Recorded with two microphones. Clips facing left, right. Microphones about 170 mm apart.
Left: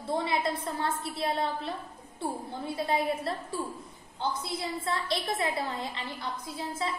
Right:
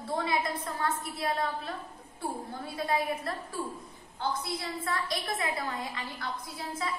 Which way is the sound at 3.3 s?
25° left (ahead or behind).